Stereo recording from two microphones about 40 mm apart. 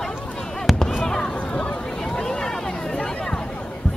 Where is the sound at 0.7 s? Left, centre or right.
Centre.